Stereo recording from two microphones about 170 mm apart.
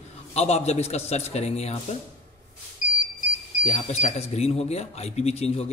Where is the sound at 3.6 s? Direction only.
40° left (ahead or behind).